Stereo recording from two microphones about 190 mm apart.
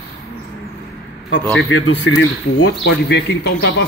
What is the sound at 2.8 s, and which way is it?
A man's voice, 70° left (ahead or behind).